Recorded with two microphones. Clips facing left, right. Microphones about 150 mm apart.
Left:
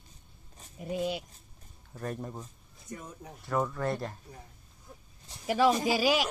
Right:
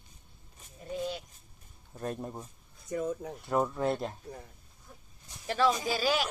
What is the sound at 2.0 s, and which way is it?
Speech, 15° right (ahead or behind).